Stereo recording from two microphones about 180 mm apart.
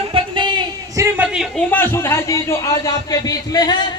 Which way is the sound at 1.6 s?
10° left (ahead or behind).